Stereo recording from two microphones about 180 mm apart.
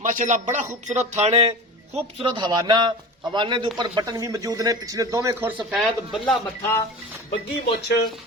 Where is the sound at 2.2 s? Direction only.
25° right (ahead or behind); by 5.8 s 10° right (ahead or behind).